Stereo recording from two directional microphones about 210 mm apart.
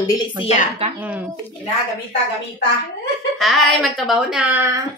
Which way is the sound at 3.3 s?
Centre (ahead or behind).